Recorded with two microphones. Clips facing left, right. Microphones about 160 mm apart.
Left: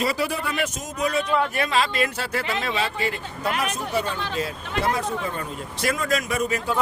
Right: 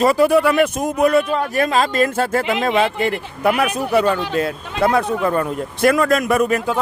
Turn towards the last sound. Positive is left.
turn(degrees=-60)  # may be behind; listen again after turning